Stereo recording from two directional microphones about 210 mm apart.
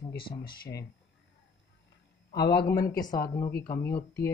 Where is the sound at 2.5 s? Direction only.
50° left (ahead or behind).